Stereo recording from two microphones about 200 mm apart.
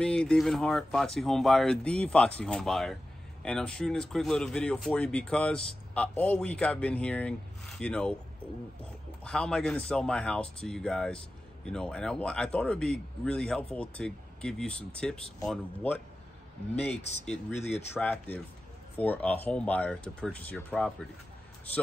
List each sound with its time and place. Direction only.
0.0 s speech: 5° left (ahead or behind)
9.2 s speech: 5° left (ahead or behind)
17.2 s speech: 5° left (ahead or behind)
17.6 s speech: 35° left (ahead or behind)
17.9 s speech: 10° left (ahead or behind)